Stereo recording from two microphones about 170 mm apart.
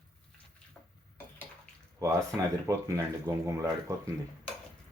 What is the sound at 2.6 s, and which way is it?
Speech, 20° right (ahead or behind).